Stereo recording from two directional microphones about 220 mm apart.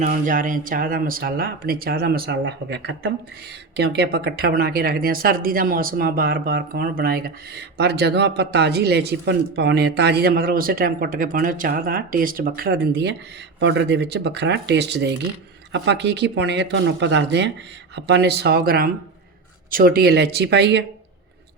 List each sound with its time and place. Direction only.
0.0 s speech: 35° right (ahead or behind)